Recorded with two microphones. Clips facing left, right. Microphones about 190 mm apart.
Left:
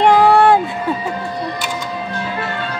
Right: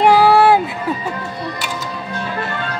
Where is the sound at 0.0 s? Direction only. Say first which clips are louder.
Even; 5° right (ahead or behind).